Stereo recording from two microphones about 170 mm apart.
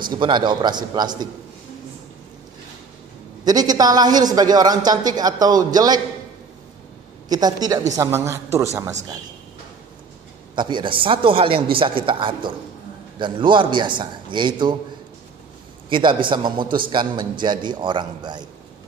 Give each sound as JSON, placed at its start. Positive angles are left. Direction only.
{"t": 0.0, "sound": "a man's voice", "side_deg": -25}
{"t": 3.4, "sound": "a man's voice", "side_deg": -25}
{"t": 7.2, "sound": "a man's voice", "side_deg": -25}
{"t": 10.5, "sound": "a man's voice", "side_deg": -25}
{"t": 15.9, "sound": "a man's voice", "side_deg": -30}